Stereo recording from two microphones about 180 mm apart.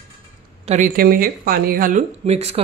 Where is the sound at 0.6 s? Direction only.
45° right (ahead or behind).